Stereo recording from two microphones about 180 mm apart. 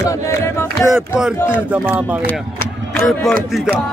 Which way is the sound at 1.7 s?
10° right (ahead or behind).